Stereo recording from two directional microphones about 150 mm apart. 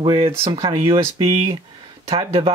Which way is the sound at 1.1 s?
40° right (ahead or behind).